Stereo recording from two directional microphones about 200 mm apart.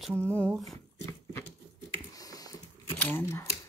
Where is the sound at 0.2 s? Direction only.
5° left (ahead or behind).